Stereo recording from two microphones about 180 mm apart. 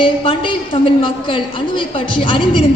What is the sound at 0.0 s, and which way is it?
A woman's voice, 30° left (ahead or behind).